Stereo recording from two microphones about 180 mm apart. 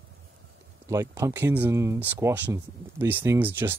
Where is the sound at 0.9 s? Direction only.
15° right (ahead or behind).